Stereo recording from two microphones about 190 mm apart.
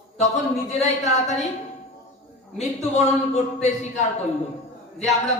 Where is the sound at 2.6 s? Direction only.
35° left (ahead or behind).